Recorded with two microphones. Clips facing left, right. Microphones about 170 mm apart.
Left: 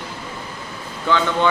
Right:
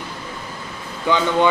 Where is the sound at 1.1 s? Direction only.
15° right (ahead or behind).